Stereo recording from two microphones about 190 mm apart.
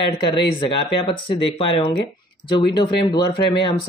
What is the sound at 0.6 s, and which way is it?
Speech, 25° left (ahead or behind).